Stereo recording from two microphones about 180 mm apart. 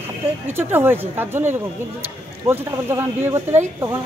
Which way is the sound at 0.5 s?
10° right (ahead or behind).